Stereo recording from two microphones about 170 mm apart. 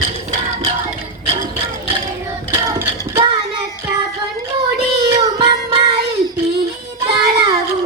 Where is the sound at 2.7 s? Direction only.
20° right (ahead or behind).